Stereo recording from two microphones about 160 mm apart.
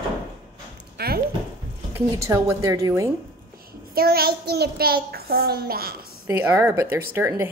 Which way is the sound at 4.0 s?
75° right (ahead or behind).